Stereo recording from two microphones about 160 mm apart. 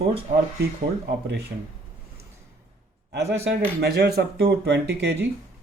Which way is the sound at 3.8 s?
90° right.